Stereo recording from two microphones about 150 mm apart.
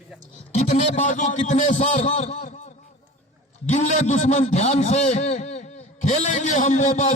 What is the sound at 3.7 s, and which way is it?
A man's voice, 50° left (ahead or behind).